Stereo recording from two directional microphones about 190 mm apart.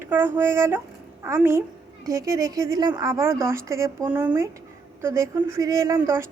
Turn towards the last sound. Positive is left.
turn(degrees=-15)  # may be behind; listen again after turning